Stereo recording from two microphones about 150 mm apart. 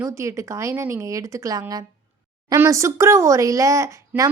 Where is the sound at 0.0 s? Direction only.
20° right (ahead or behind).